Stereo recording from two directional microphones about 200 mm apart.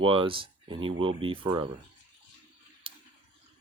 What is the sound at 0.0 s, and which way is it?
Speech, 25° right (ahead or behind).